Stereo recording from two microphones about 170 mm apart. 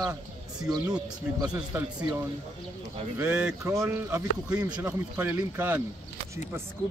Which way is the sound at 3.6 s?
15° right (ahead or behind).